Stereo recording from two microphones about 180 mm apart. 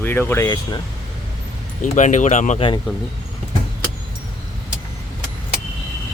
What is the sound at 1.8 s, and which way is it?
Speech, 40° left (ahead or behind).